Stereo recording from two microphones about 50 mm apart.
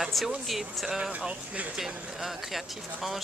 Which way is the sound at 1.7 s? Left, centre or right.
Centre.